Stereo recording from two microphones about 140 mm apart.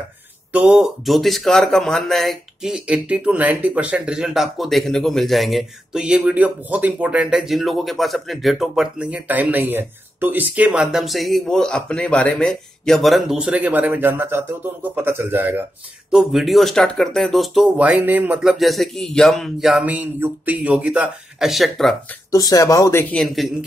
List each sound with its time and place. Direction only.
0.5 s speech: 10° right (ahead or behind)
16.1 s speech: 5° right (ahead or behind)
18.4 s speech: centre (ahead or behind)
22.3 s speech: 25° left (ahead or behind)
23.1 s speech: centre (ahead or behind)